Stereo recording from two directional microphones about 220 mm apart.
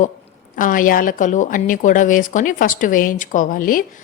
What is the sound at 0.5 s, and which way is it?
A woman's voice, 35° left (ahead or behind).